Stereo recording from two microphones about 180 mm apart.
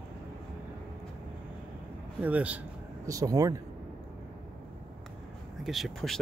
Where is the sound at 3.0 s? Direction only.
20° right (ahead or behind).